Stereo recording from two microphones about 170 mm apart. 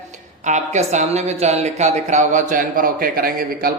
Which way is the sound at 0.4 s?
45° right (ahead or behind).